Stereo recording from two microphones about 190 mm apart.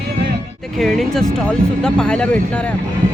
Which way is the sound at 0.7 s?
Centre (ahead or behind).